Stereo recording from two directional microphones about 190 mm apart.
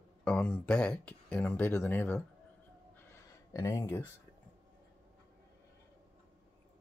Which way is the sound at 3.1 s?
20° left (ahead or behind).